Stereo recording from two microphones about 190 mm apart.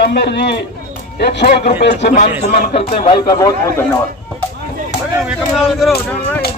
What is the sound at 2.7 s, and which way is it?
Speech, 35° left (ahead or behind).